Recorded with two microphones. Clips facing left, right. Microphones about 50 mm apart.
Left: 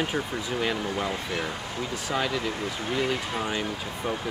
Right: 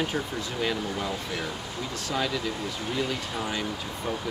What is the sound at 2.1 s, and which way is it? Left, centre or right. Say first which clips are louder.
Speech: left 1 dB; centre.